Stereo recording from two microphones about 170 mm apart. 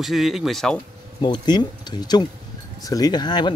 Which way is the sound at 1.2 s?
25° left (ahead or behind).